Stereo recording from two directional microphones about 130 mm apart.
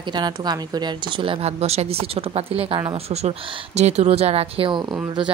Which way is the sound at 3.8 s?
60° right (ahead or behind).